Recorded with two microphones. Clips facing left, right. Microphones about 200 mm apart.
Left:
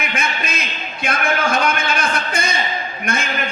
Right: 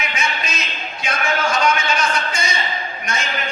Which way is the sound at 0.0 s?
55° left (ahead or behind).